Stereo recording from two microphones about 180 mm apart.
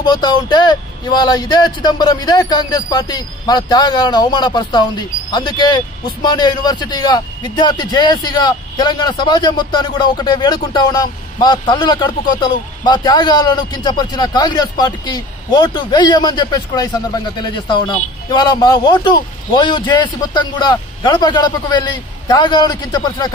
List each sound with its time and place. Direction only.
0.0 s a man's voice: 25° left (ahead or behind)